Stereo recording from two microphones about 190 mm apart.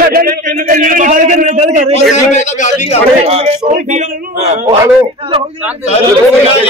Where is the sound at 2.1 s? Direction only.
40° left (ahead or behind).